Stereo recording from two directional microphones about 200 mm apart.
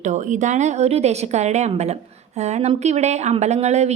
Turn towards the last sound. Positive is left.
turn(degrees=-35)  # may be behind; listen again after turning